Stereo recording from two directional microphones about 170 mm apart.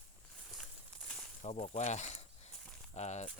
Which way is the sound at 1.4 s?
40° left (ahead or behind).